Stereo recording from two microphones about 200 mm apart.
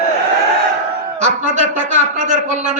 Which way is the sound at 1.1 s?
35° right (ahead or behind).